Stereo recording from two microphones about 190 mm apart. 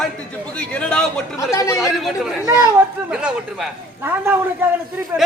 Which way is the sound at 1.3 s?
15° left (ahead or behind).